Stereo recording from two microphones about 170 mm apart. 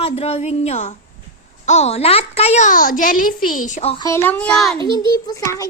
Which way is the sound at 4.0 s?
15° left (ahead or behind).